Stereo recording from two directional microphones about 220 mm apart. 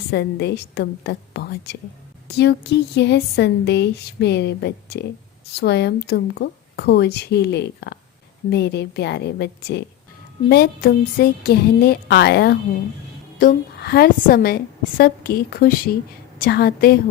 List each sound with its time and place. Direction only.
0.1 s speech: 50° left (ahead or behind)